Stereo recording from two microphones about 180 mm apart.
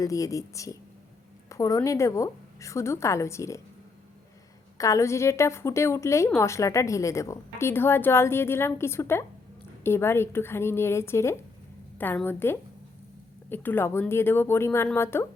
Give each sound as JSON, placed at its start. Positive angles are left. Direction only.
{"t": 0.0, "sound": "a woman's voice", "side_deg": 20}
{"t": 4.8, "sound": "a woman's voice", "side_deg": 15}